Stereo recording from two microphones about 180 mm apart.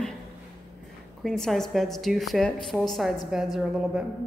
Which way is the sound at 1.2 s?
5° left (ahead or behind).